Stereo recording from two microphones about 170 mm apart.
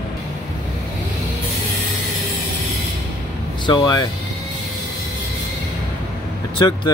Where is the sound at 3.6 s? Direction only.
25° left (ahead or behind).